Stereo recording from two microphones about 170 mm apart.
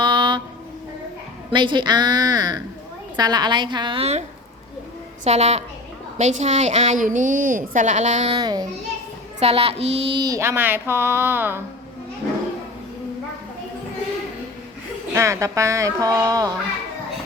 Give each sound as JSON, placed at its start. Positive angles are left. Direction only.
{"t": 0.0, "sound": "a sound", "side_deg": -30}
{"t": 1.5, "sound": "speech", "side_deg": -25}
{"t": 5.2, "sound": "a woman's voice", "side_deg": -40}
{"t": 8.4, "sound": "speech", "side_deg": -25}
{"t": 9.4, "sound": "a sound", "side_deg": -35}
{"t": 15.1, "sound": "speech", "side_deg": -15}